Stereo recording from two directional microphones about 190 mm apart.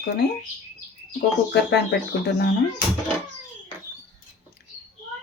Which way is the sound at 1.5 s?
60° left (ahead or behind).